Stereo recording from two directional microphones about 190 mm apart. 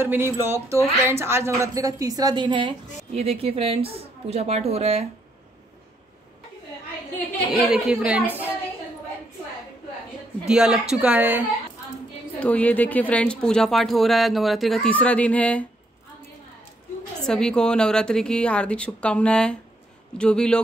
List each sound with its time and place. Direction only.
0.0 s a woman's voice: 10° right (ahead or behind); by 5.0 s 35° right (ahead or behind)
7.7 s a woman's voice: 5° right (ahead or behind)
10.4 s a woman's voice: 5° right (ahead or behind)
12.4 s speech: 5° left (ahead or behind)
17.3 s a woman's voice: 5° left (ahead or behind)